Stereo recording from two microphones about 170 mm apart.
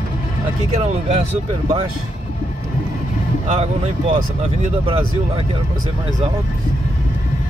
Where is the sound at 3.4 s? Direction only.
40° right (ahead or behind).